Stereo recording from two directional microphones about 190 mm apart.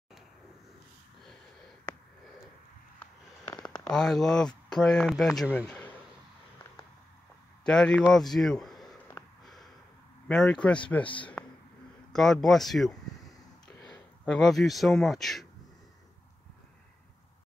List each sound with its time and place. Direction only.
3.6 s speech: 5° left (ahead or behind)
5.7 s a sound: 10° left (ahead or behind)
7.6 s a man's voice: 5° left (ahead or behind)
9.0 s snort: 5° left (ahead or behind)
10.2 s speech: 5° left (ahead or behind)
12.1 s speech: centre (ahead or behind)
13.7 s a sound: 20° left (ahead or behind)
14.2 s speech: centre (ahead or behind)